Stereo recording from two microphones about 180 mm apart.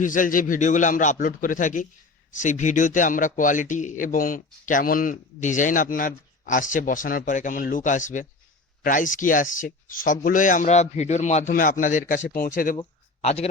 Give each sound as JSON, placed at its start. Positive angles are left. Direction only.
{"t": 0.0, "sound": "a man's voice", "side_deg": 45}
{"t": 13.2, "sound": "a man's voice", "side_deg": 35}